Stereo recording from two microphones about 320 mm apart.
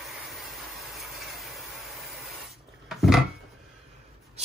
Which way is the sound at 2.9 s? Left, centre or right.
Centre.